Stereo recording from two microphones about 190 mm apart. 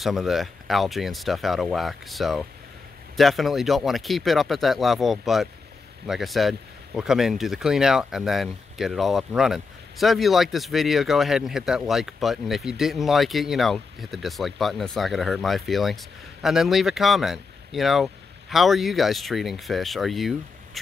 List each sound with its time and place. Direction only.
0.0 s speech: centre (ahead or behind)